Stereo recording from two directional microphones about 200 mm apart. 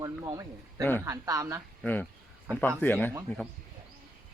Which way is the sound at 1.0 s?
15° right (ahead or behind).